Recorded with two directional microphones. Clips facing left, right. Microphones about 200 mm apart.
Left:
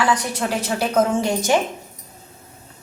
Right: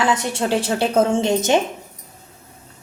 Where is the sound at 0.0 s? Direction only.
25° right (ahead or behind).